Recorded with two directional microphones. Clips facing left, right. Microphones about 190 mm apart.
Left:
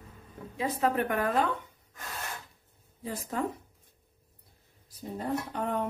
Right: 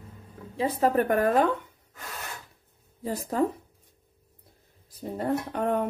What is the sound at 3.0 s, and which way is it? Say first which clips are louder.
Speech: right 6 dB; 40° right (ahead or behind).